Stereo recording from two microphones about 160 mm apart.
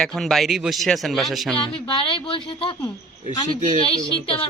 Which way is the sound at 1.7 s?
30° left (ahead or behind).